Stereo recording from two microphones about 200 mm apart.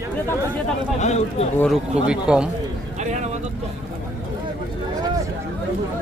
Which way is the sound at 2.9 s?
35° right (ahead or behind).